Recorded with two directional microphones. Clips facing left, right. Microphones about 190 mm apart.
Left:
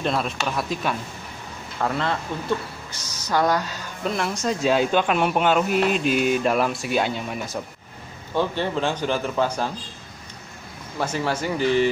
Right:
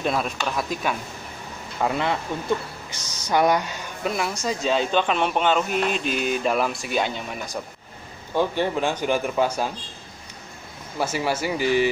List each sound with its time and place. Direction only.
0.0 s speech: 5° right (ahead or behind)
1.8 s speech: 15° right (ahead or behind)
3.3 s speech: 15° right (ahead or behind)
4.0 s speech: 5° right (ahead or behind)
8.4 s speech: 10° right (ahead or behind)
11.0 s speech: 10° right (ahead or behind)